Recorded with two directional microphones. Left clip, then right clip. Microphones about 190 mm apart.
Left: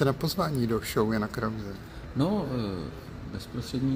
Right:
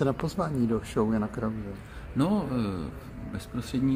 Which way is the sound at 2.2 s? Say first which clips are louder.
Right 1 dB; 15° right (ahead or behind).